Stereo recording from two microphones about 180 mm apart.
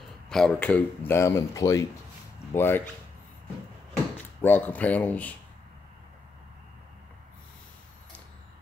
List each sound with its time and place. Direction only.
0.3 s speech: 5° left (ahead or behind)
4.4 s speech: 10° left (ahead or behind)